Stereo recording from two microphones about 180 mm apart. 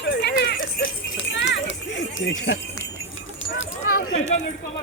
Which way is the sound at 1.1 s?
80° left.